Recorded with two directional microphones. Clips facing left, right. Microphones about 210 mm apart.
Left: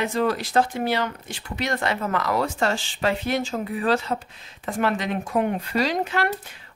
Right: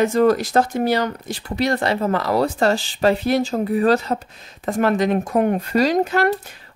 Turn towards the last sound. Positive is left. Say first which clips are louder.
# right 6 dB
turn(degrees=-40)  # may be behind; listen again after turning